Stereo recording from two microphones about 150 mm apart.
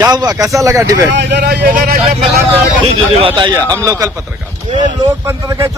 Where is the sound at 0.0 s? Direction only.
25° right (ahead or behind).